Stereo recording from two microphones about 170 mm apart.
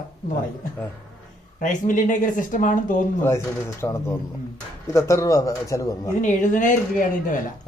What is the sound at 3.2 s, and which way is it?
A man's voice, 15° left (ahead or behind).